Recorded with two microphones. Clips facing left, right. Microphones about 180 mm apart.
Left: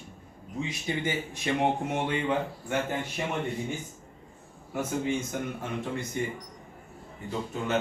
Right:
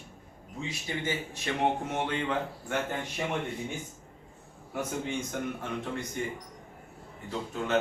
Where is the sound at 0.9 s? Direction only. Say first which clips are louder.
Left 2 dB; 15° left (ahead or behind).